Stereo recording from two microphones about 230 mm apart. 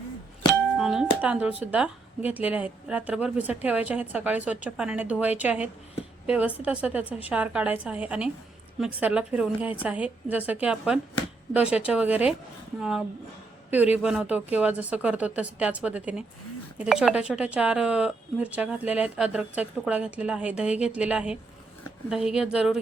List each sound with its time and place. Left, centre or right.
0.8 s a woman's voice: centre